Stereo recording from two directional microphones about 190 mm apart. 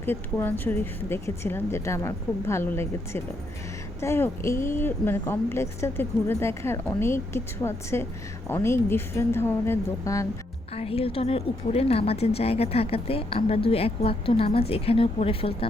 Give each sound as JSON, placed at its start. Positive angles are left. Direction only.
{"t": 0.0, "sound": "a woman's voice", "side_deg": 10}
{"t": 10.8, "sound": "a woman's voice", "side_deg": 30}